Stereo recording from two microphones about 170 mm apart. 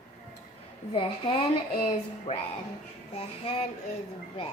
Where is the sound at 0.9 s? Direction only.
30° left (ahead or behind).